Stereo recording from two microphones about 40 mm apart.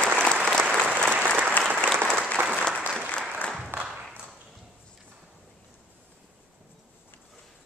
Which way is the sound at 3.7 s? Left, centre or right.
Right.